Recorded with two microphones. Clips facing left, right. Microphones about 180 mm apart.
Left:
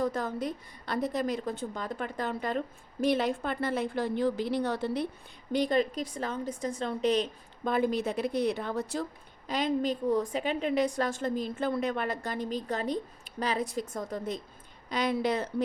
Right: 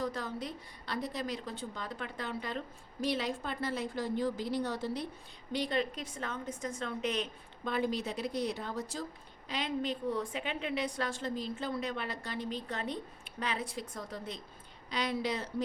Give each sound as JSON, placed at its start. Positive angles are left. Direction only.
{"t": 0.0, "sound": "a woman's voice", "side_deg": 50}
{"t": 5.5, "sound": "a woman's voice", "side_deg": 45}
{"t": 7.6, "sound": "a woman's voice", "side_deg": 50}
{"t": 9.5, "sound": "a woman's voice", "side_deg": 45}